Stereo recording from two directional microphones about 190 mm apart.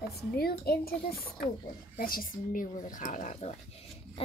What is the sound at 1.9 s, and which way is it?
A child's voice, 50° left (ahead or behind).